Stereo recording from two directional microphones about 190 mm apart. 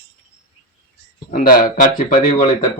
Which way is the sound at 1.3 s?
45° left (ahead or behind).